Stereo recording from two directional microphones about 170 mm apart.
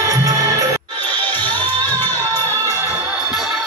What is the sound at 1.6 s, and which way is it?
Music, 10° left (ahead or behind).